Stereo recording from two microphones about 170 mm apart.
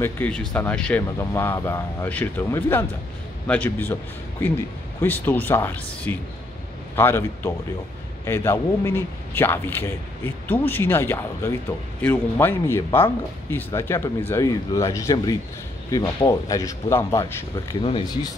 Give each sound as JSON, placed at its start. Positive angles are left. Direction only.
{"t": 0.0, "sound": "speech", "side_deg": 10}
{"t": 5.0, "sound": "speech", "side_deg": 10}